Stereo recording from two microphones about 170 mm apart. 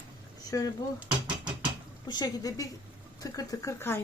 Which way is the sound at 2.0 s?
25° left (ahead or behind).